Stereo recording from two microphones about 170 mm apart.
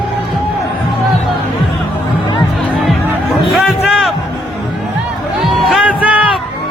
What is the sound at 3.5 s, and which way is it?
Music, centre (ahead or behind).